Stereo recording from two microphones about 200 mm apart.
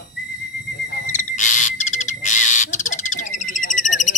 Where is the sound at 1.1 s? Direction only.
40° left (ahead or behind).